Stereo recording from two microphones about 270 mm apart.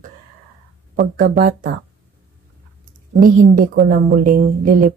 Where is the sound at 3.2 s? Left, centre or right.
Right.